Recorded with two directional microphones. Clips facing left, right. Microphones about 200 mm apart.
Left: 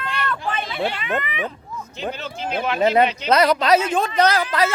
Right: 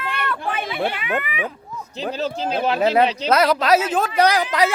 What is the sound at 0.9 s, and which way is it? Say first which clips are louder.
Speech: even; 10° right (ahead or behind).